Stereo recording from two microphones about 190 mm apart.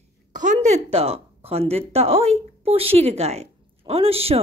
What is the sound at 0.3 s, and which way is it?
A woman's voice, 40° right (ahead or behind).